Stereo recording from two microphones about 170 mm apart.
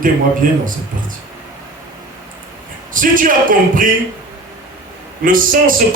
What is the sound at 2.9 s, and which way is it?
Speech, 50° right (ahead or behind).